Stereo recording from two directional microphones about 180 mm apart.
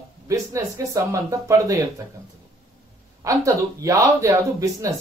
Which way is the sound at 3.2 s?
20° right (ahead or behind).